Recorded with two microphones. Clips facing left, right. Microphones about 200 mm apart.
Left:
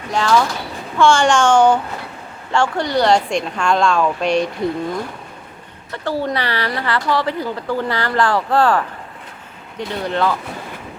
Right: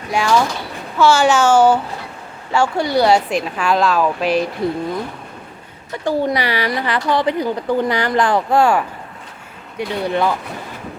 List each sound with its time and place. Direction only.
0.1 s a woman's voice: 10° right (ahead or behind)
5.9 s a woman's voice: 15° right (ahead or behind)